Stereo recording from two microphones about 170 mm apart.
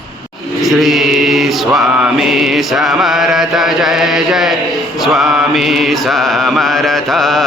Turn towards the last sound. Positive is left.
turn(degrees=0)  # may be behind; listen again after turning